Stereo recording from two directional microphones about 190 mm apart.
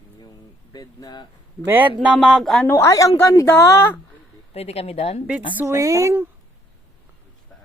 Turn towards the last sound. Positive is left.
turn(degrees=-15)  # may be behind; listen again after turning